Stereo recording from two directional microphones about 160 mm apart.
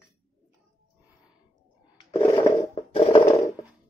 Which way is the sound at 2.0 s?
20° left (ahead or behind).